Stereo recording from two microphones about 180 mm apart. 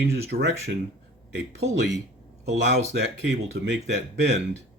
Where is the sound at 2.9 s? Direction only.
70° right (ahead or behind).